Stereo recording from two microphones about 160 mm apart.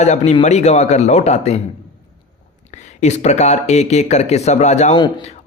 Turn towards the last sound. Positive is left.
turn(degrees=45)  # may be behind; listen again after turning